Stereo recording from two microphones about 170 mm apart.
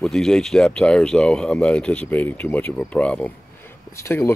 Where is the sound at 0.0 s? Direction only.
Centre (ahead or behind).